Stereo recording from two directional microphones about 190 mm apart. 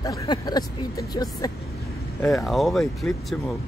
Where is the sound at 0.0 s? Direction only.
20° left (ahead or behind).